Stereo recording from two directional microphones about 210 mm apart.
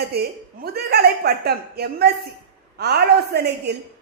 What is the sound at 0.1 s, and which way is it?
A woman's voice, 50° right (ahead or behind).